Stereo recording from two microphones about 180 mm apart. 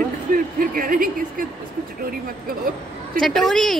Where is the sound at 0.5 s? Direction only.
50° right (ahead or behind).